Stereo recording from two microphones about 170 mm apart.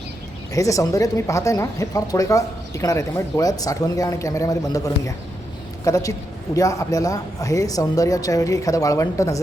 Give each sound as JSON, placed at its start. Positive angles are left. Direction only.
{"t": 0.5, "sound": "speech", "side_deg": 20}